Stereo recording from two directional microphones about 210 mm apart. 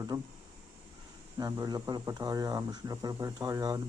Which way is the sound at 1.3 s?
15° right (ahead or behind).